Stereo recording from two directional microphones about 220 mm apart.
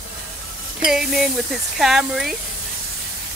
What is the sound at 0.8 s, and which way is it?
Speech, centre (ahead or behind).